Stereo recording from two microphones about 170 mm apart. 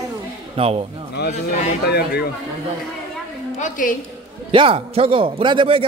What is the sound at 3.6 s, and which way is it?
Speech, 50° left (ahead or behind).